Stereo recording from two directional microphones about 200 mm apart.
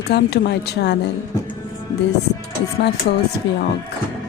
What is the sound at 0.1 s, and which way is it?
Speech, 55° left (ahead or behind).